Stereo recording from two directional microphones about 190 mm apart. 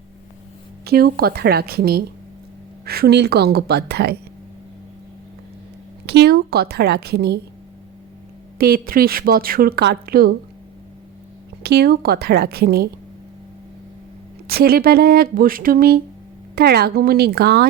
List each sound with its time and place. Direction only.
0.9 s a woman's voice: 55° right (ahead or behind)
6.1 s a woman's voice: 60° right (ahead or behind)
8.5 s a woman's voice: 55° right (ahead or behind)
11.6 s a woman's voice: 60° right (ahead or behind)
14.4 s a woman's voice: 55° right (ahead or behind)